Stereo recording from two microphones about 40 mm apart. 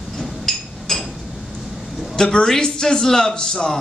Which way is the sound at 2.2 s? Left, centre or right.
Centre.